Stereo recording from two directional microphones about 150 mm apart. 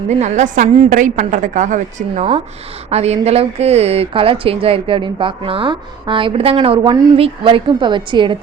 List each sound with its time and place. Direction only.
0.2 s a woman's voice: 50° right (ahead or behind); by 8.4 s 30° right (ahead or behind)